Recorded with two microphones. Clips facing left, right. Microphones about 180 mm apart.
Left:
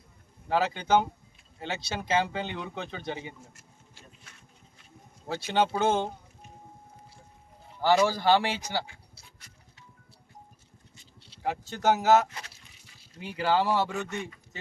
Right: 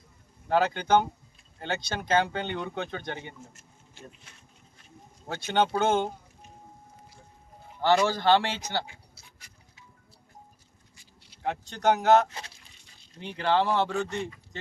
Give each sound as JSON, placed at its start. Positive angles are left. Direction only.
{"t": 0.4, "sound": "speech", "side_deg": 5}
{"t": 3.5, "sound": "a sound", "side_deg": -25}
{"t": 5.5, "sound": "speech", "side_deg": 5}
{"t": 7.8, "sound": "a man's voice", "side_deg": 10}
{"t": 11.4, "sound": "a man's voice", "side_deg": 5}